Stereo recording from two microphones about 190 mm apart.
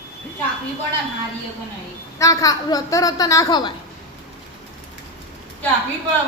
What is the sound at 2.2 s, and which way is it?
A woman's voice, 20° left (ahead or behind).